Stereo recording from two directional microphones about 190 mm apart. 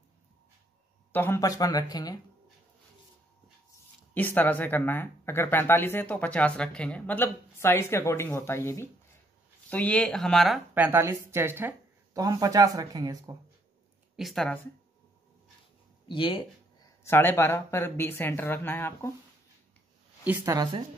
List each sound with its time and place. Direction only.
1.1 s speech: 10° left (ahead or behind)
4.1 s speech: 10° left (ahead or behind)
10.7 s speech: 10° right (ahead or behind)
14.1 s speech: centre (ahead or behind)
16.1 s speech: 25° left (ahead or behind)
17.0 s speech: 10° left (ahead or behind)
20.2 s speech: 15° right (ahead or behind)